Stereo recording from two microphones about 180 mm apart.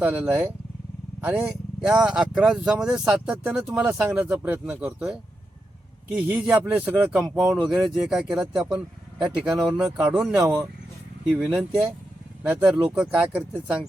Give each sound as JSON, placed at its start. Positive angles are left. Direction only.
{"t": 0.0, "sound": "speech", "side_deg": -5}